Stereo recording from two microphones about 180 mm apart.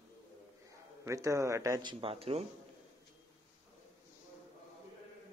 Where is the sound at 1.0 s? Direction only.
15° right (ahead or behind); by 2.4 s 30° right (ahead or behind).